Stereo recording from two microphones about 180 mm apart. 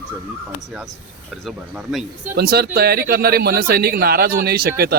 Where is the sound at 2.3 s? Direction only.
60° right (ahead or behind).